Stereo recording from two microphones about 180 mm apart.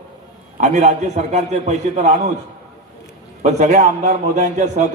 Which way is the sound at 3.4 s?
40° right (ahead or behind).